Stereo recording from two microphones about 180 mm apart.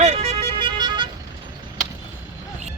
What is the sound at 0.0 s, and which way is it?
Vehicle, 35° right (ahead or behind).